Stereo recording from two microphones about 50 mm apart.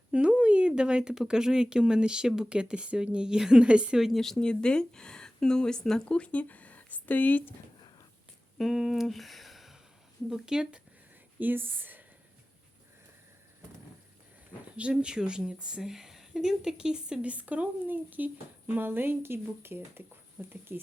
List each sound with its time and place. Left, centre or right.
0.1 s a sound: right
0.8 s speech: centre
4.0 s speech: centre; by 7.5 s left
8.5 s speech: centre
9.0 s a sound: centre
10.2 s speech: centre
11.3 s speech: right
14.9 s speech: centre
17.2 s speech: right
20.4 s speech: right